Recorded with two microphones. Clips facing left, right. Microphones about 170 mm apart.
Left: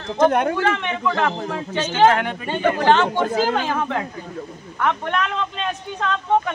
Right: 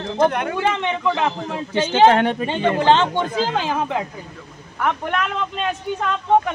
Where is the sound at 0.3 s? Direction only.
45° left (ahead or behind).